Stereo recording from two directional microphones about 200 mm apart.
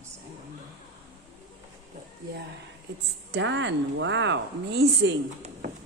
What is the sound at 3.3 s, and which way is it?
A woman's voice, 65° right (ahead or behind).